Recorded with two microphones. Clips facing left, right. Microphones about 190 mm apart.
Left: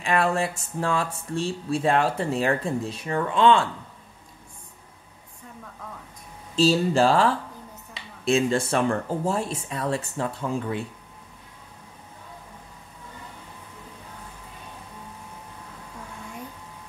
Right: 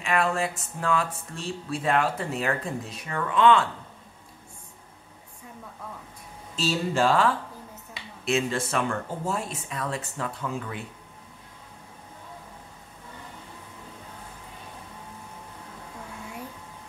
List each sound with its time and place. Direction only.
0.0 s speech: 35° left (ahead or behind)
6.5 s speech: 30° left (ahead or behind)
8.3 s speech: 30° left (ahead or behind)